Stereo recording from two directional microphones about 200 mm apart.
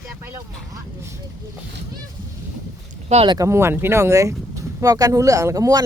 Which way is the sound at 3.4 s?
15° right (ahead or behind).